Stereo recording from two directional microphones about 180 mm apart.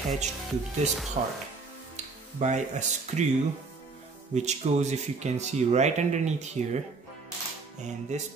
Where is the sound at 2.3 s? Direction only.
40° right (ahead or behind).